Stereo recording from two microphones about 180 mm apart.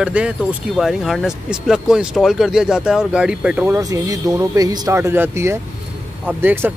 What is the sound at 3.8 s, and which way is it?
Speech, 20° right (ahead or behind).